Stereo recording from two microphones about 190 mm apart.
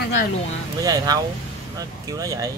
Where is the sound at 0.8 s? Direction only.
20° right (ahead or behind).